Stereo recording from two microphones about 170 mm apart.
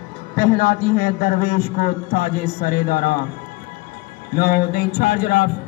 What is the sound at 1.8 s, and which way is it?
Speech, 60° left (ahead or behind).